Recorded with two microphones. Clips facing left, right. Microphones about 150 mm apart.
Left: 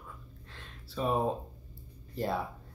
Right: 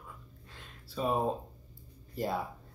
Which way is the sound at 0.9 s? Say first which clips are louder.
Left 1 dB; centre (ahead or behind).